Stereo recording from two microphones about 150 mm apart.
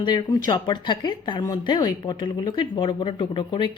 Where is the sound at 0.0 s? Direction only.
30° left (ahead or behind).